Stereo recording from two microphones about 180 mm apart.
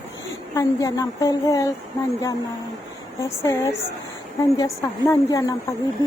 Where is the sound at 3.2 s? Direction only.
15° left (ahead or behind).